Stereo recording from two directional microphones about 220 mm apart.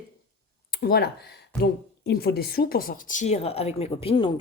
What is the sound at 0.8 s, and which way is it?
A woman's voice, 45° left (ahead or behind).